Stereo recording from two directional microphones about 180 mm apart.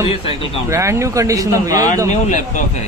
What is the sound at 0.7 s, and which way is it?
Speech, 15° right (ahead or behind).